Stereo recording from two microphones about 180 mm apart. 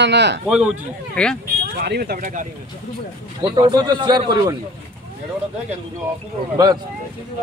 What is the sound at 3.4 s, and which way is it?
Speech, 25° right (ahead or behind).